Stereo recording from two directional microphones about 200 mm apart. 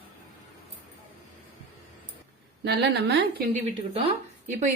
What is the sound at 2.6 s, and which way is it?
Speech, 55° right (ahead or behind).